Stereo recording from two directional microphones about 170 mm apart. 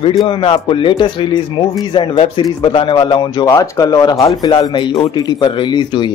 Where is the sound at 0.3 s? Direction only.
30° left (ahead or behind).